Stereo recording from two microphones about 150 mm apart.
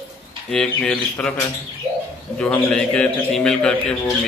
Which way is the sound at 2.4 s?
5° left (ahead or behind).